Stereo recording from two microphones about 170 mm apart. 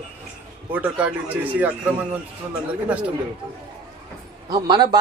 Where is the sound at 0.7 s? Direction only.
10° right (ahead or behind).